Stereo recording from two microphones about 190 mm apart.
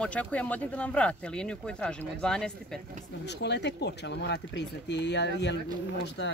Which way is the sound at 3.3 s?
65° left (ahead or behind).